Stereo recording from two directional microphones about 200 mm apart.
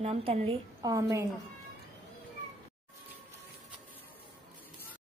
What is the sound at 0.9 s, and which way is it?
Speech, 15° right (ahead or behind).